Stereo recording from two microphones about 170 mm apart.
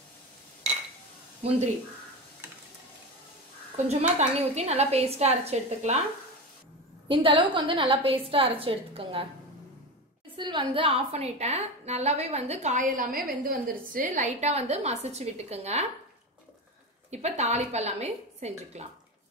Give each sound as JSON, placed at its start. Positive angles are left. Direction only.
{"t": 3.7, "sound": "a woman's voice", "side_deg": -40}
{"t": 7.1, "sound": "a woman's voice", "side_deg": -30}
{"t": 10.3, "sound": "a woman's voice", "side_deg": -30}
{"t": 17.1, "sound": "a woman's voice", "side_deg": -40}